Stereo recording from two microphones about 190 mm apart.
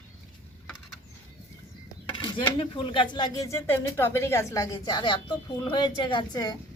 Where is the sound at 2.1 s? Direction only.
25° left (ahead or behind).